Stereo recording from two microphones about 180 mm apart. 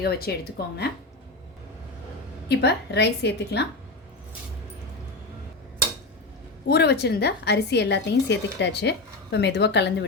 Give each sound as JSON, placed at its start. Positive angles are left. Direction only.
{"t": 0.0, "sound": "speech", "side_deg": 60}
{"t": 2.5, "sound": "a woman's voice", "side_deg": 70}
{"t": 6.7, "sound": "a woman's voice", "side_deg": 65}